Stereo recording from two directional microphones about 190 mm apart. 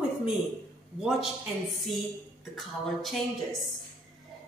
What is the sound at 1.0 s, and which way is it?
Speech, centre (ahead or behind).